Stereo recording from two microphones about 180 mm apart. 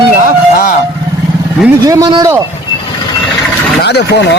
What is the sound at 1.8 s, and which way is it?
Speech, 20° right (ahead or behind).